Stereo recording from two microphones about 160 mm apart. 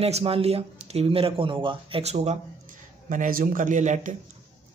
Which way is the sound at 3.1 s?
55° right (ahead or behind).